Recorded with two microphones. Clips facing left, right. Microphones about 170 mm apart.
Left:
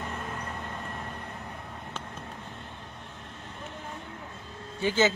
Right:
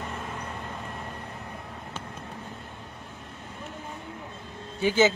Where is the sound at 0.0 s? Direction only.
Centre (ahead or behind).